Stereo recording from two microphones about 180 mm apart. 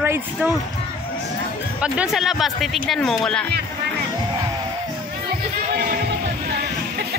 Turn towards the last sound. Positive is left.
turn(degrees=-50)  # may be behind; listen again after turning